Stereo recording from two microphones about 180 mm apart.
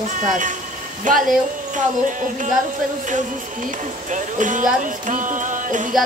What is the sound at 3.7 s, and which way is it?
Music, 45° right (ahead or behind).